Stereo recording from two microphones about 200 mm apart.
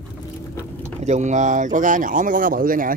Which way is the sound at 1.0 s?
35° right (ahead or behind).